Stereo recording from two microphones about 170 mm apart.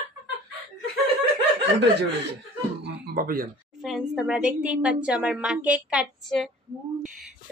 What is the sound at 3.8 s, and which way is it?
Speech, centre (ahead or behind).